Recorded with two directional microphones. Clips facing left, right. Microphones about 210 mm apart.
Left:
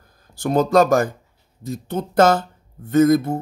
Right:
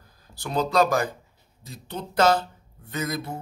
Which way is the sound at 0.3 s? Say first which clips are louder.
Left 8 dB; 50° left (ahead or behind).